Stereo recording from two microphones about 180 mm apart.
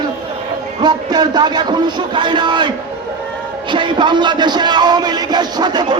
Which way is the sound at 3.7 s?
25° right (ahead or behind).